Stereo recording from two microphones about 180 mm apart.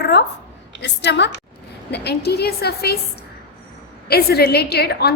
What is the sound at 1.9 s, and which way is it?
A woman's voice, 65° left (ahead or behind).